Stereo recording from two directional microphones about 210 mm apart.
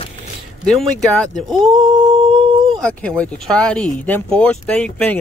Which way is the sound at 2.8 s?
5° left (ahead or behind).